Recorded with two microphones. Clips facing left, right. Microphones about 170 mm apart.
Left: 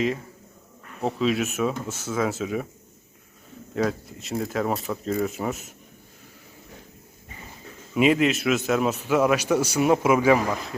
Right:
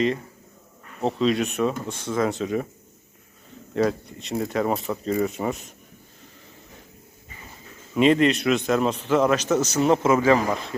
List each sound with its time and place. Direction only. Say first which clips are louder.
1.0 s speech: right 2 dB; 5° left (ahead or behind)
3.8 s speech: right 3 dB; centre (ahead or behind)
7.9 s a man's voice: right 2 dB; 5° left (ahead or behind)